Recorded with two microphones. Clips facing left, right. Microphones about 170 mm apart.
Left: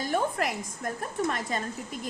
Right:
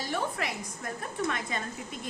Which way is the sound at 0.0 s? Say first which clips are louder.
Left 5 dB; 45° left (ahead or behind).